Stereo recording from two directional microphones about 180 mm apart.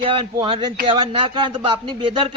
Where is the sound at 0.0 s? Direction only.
30° right (ahead or behind).